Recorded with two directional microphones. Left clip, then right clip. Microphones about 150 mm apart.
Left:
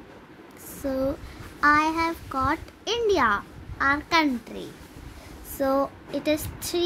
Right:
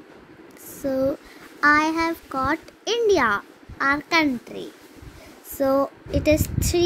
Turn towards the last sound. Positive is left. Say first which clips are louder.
# right 5 dB
turn(degrees=-15)  # may be behind; listen again after turning